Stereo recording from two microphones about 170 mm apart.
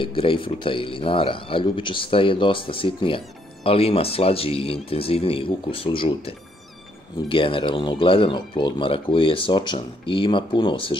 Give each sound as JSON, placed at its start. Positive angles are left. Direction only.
{"t": 0.0, "sound": "speech", "side_deg": 30}